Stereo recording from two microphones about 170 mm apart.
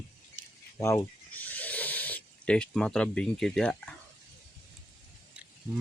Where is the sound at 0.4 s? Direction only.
50° right (ahead or behind).